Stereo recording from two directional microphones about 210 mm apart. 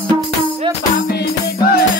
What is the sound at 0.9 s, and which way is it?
Music, 45° left (ahead or behind).